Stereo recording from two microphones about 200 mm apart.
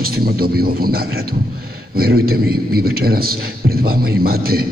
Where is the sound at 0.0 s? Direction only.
50° right (ahead or behind).